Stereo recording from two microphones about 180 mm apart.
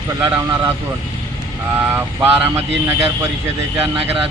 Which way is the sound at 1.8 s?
10° right (ahead or behind).